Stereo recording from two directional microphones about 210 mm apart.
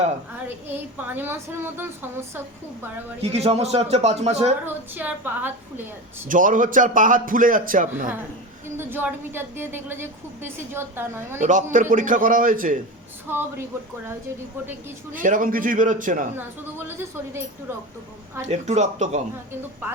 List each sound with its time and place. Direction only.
0.7 s a woman's voice: 10° right (ahead or behind)
3.2 s a man's voice: 30° right (ahead or behind)
4.6 s a woman's voice: 10° right (ahead or behind)
6.2 s a man's voice: 40° right (ahead or behind)
8.8 s a woman's voice: 10° right (ahead or behind)
11.3 s a man's voice: 35° right (ahead or behind)
13.2 s a woman's voice: 10° right (ahead or behind)
15.1 s a man's voice: 40° right (ahead or behind)
16.7 s a woman's voice: 10° right (ahead or behind)
18.4 s a man's voice: 35° right (ahead or behind)